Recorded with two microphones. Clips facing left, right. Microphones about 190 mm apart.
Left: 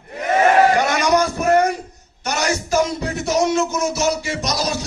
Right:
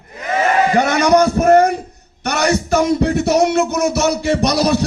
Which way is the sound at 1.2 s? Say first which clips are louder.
Right 5 dB; 55° right (ahead or behind).